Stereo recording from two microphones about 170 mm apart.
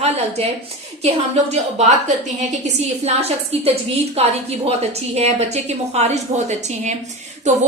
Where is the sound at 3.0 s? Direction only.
35° right (ahead or behind).